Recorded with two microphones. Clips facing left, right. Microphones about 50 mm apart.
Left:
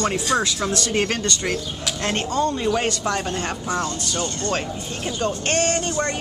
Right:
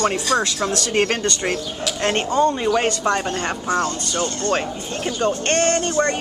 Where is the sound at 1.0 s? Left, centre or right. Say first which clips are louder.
Right 5 dB; right.